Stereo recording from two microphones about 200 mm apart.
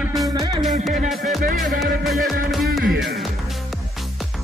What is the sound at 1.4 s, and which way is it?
Music, 45° right (ahead or behind).